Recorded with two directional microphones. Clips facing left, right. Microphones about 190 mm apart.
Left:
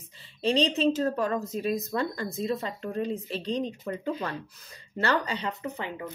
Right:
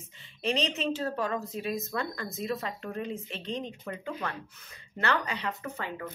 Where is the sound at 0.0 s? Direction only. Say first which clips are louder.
Left 4 dB; 35° left (ahead or behind).